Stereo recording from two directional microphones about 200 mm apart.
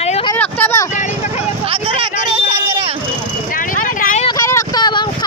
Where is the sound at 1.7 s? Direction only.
25° right (ahead or behind).